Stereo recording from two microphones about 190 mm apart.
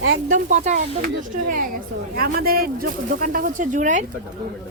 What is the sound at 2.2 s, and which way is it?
Speech, 50° right (ahead or behind).